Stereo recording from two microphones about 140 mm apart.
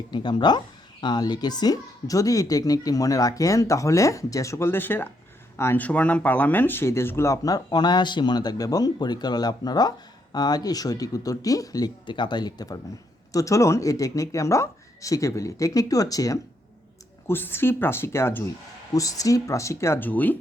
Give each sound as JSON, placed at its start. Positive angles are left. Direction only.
{"t": 0.1, "sound": "speech", "side_deg": 30}